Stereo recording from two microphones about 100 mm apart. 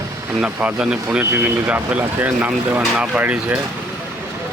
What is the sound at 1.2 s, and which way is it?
Speech, 20° right (ahead or behind).